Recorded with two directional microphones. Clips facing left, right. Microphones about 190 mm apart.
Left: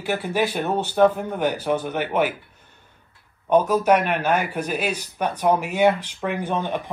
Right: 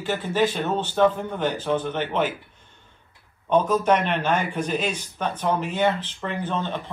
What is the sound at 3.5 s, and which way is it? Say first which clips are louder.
Speech: left 2 dB; 10° left (ahead or behind).